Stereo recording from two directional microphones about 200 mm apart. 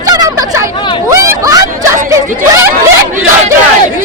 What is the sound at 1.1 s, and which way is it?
Hubbub, 15° right (ahead or behind).